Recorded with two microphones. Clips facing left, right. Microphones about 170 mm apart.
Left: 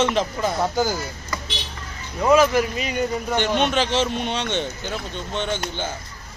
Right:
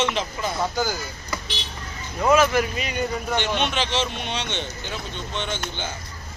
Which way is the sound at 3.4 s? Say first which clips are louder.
Left 6 dB; 45° left (ahead or behind).